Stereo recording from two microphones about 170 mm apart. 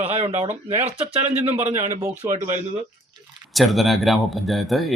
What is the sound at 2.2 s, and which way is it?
Speech, 25° right (ahead or behind).